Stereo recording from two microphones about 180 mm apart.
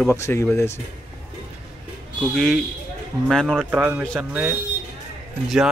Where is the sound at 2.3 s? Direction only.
Centre (ahead or behind).